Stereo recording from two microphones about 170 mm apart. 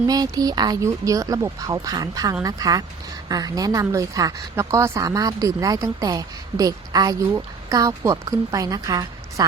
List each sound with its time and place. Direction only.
0.1 s a woman's voice: 20° right (ahead or behind)